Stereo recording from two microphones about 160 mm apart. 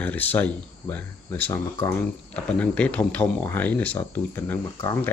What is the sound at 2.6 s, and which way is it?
Speech, 10° left (ahead or behind).